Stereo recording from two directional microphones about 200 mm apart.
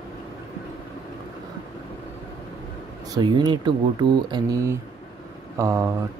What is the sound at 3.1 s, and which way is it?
Speech, 20° right (ahead or behind).